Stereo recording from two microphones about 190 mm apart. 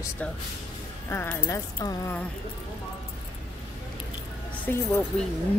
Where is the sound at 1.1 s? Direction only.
10° left (ahead or behind).